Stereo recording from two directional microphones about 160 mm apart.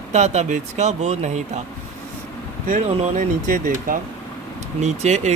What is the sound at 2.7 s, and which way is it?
Speech, 55° right (ahead or behind).